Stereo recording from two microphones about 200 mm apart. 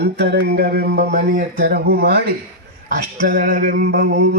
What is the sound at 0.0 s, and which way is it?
Speech, 55° right (ahead or behind).